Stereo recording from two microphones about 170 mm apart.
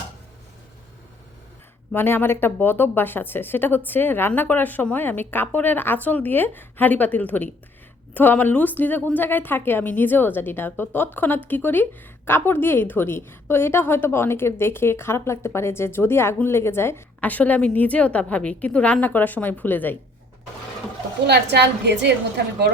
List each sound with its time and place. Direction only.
1.9 s a woman's voice: 10° left (ahead or behind)
21.2 s a woman's voice: 80° right